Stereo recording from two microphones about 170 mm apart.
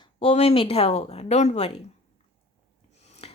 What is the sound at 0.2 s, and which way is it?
Speech, 35° left (ahead or behind).